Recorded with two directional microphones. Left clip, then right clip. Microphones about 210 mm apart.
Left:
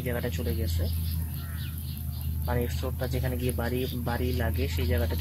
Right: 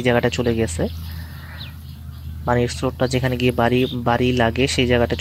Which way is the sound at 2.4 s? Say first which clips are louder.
Right 12 dB; 40° right (ahead or behind).